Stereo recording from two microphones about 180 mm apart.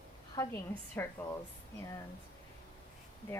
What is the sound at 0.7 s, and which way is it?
Speech, 10° left (ahead or behind).